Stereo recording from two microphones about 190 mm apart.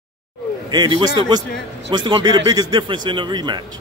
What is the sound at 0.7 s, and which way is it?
A man's voice, 25° right (ahead or behind).